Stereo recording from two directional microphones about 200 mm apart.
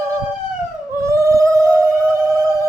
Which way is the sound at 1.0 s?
15° right (ahead or behind).